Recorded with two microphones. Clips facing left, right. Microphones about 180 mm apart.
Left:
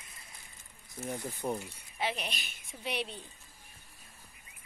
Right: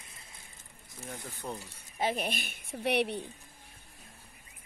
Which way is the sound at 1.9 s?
45° right (ahead or behind).